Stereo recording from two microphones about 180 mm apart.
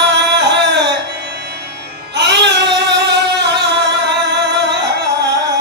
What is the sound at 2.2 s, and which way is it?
Child singing, 75° right (ahead or behind).